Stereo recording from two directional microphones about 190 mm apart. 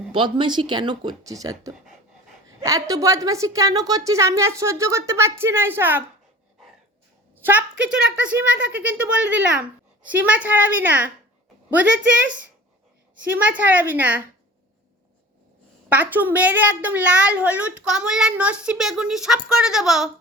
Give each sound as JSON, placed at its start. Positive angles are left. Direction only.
{"t": 0.1, "sound": "a woman's voice", "side_deg": -25}
{"t": 7.4, "sound": "a woman's voice", "side_deg": -10}
{"t": 15.9, "sound": "a woman's voice", "side_deg": -10}